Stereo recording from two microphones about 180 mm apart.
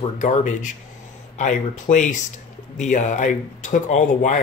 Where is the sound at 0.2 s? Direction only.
45° left (ahead or behind).